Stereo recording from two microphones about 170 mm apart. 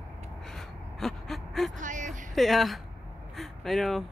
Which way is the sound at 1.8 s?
50° right (ahead or behind).